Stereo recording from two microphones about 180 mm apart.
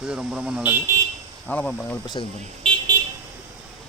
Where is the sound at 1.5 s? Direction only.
5° left (ahead or behind).